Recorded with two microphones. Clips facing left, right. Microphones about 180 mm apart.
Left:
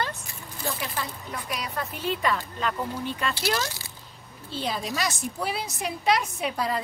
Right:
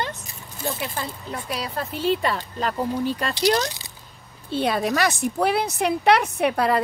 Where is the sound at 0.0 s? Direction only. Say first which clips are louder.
Right 2 dB; 20° right (ahead or behind); by 3.3 s 35° right (ahead or behind).